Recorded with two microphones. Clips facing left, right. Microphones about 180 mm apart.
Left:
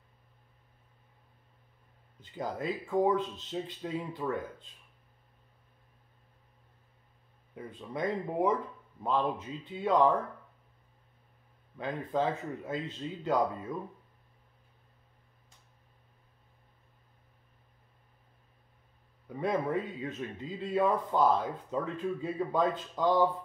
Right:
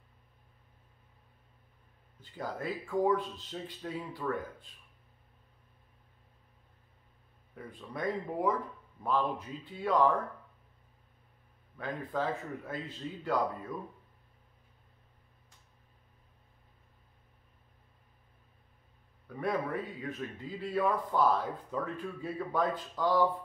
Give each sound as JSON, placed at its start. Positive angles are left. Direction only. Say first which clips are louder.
{"t": 2.3, "sound": "a man's voice", "louder": "left 2 dB", "side_deg": 20}
{"t": 7.5, "sound": "a man's voice", "louder": "left 3 dB", "side_deg": 20}
{"t": 11.7, "sound": "a man's voice", "louder": "left 3 dB", "side_deg": 20}
{"t": 19.2, "sound": "a man's voice", "louder": "left 2 dB", "side_deg": 20}